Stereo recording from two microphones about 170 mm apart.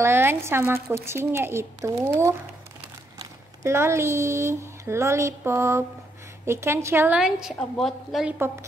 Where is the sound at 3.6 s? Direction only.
15° right (ahead or behind).